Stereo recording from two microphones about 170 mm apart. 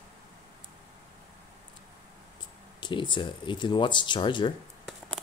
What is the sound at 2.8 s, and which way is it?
Speech, 30° left (ahead or behind).